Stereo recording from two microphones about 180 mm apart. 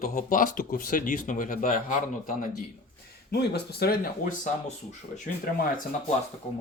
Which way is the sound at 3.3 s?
60° left (ahead or behind).